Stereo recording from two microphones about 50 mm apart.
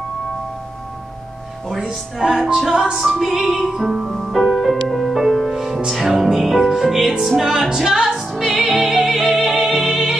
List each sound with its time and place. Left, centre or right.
1.8 s music: centre
2.7 s music: centre
3.0 s music: centre